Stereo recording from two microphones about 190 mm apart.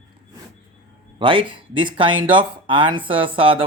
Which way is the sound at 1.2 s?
25° right (ahead or behind).